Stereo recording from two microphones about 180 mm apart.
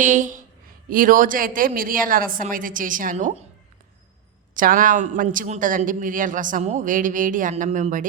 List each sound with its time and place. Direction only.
0.0 s a man's voice: 45° right (ahead or behind)
4.5 s a man's voice: 50° right (ahead or behind)